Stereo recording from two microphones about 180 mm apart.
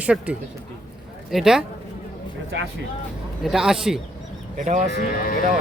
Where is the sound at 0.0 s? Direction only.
5° right (ahead or behind).